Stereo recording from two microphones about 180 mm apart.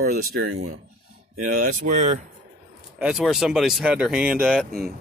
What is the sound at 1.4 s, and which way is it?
Speech, 45° right (ahead or behind).